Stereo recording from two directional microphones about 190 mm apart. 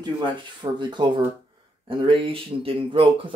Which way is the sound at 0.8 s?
25° right (ahead or behind).